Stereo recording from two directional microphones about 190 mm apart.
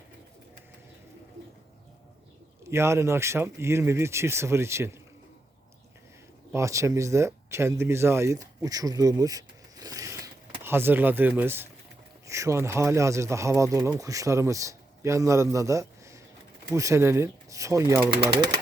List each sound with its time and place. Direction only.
2.6 s speech: 15° right (ahead or behind)
6.5 s speech: 15° right (ahead or behind)
9.8 s a sound: 20° right (ahead or behind)
12.2 s speech: 15° right (ahead or behind)